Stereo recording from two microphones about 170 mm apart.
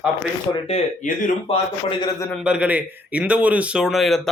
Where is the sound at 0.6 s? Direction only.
45° left (ahead or behind).